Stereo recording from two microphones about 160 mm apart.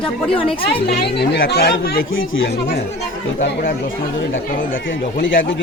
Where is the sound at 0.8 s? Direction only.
90° left.